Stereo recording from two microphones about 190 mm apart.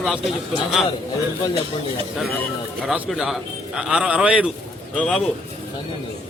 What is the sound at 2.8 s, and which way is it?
Speech, 5° right (ahead or behind).